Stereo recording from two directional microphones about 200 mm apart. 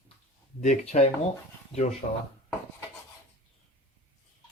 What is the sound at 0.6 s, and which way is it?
Speech, 30° left (ahead or behind).